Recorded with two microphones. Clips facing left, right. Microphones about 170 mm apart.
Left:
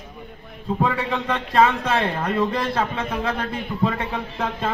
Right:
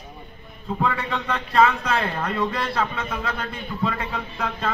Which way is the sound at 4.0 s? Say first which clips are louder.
Left 2 dB; 25° left (ahead or behind).